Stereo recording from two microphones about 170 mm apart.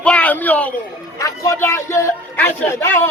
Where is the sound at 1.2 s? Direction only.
20° left (ahead or behind).